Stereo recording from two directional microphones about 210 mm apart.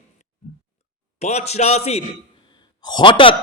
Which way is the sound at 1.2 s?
30° left (ahead or behind).